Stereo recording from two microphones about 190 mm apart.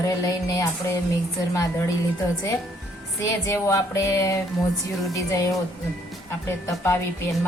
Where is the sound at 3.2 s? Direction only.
15° left (ahead or behind).